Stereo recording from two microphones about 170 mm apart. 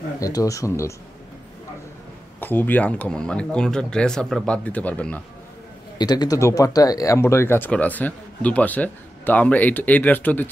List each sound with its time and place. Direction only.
0.2 s speech: 20° left (ahead or behind)
2.4 s speech: 10° left (ahead or behind)
5.9 s speech: 25° left (ahead or behind)